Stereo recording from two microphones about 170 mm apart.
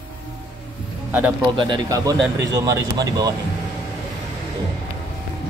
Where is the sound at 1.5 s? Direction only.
25° right (ahead or behind).